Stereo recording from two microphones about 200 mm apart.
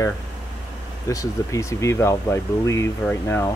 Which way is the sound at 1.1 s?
15° left (ahead or behind).